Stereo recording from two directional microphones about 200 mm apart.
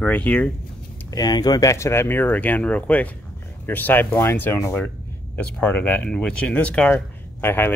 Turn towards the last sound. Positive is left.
turn(degrees=10)  # may be behind; listen again after turning